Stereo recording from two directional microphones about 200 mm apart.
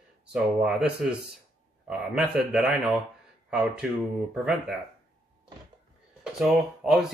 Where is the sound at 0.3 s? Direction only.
5° right (ahead or behind).